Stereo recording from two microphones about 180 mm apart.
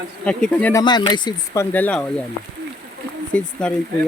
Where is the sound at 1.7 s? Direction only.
10° left (ahead or behind).